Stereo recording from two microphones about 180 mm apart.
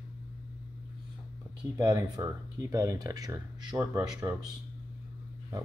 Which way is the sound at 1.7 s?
20° right (ahead or behind).